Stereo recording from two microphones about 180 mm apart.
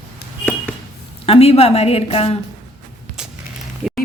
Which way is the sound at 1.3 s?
35° left (ahead or behind).